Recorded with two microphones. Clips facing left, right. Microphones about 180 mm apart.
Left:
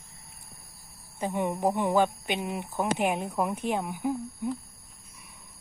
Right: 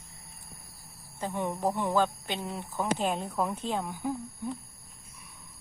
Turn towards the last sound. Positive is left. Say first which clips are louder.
# left 3 dB
turn(degrees=15)  # may be behind; listen again after turning